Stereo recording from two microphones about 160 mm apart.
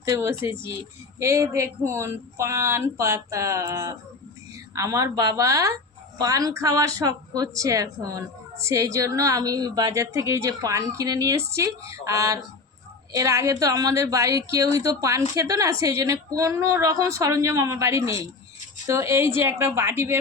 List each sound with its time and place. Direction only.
0.0 s a woman's voice: 15° right (ahead or behind)